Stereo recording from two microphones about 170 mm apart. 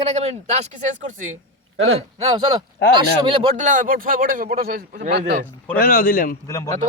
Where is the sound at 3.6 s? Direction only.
50° right (ahead or behind).